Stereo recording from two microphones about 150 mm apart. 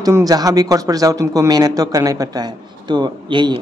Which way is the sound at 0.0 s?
25° right (ahead or behind).